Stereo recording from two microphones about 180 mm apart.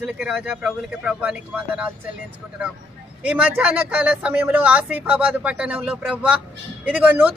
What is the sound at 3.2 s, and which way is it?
A man's voice, 5° right (ahead or behind).